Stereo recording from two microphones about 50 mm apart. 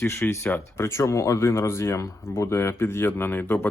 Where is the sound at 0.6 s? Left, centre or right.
Left.